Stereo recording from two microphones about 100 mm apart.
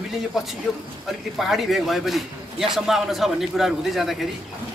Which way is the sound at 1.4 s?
Centre (ahead or behind).